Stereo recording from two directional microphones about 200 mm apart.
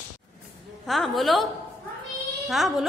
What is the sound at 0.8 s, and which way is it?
A woman's voice, centre (ahead or behind).